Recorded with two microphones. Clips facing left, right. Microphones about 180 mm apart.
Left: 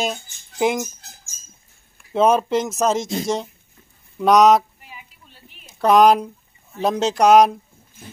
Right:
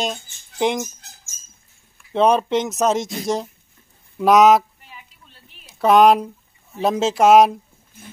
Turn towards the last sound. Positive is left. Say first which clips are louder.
# right 1 dB
turn(degrees=0)  # may be behind; listen again after turning